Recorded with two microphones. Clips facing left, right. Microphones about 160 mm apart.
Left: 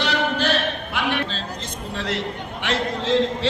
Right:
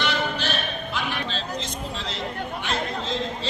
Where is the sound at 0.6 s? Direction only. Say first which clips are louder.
Left 4 dB; 70° left (ahead or behind).